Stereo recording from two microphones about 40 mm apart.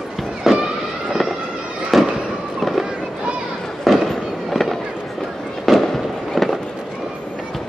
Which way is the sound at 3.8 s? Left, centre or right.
Centre.